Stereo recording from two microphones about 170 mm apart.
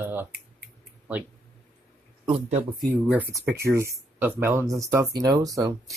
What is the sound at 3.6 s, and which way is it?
Speech, 15° right (ahead or behind).